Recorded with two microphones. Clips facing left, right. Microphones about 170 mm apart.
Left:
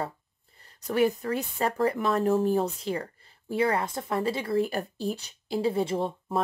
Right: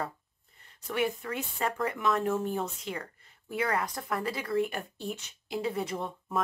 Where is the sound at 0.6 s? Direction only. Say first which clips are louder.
Left 6 dB; 35° left (ahead or behind).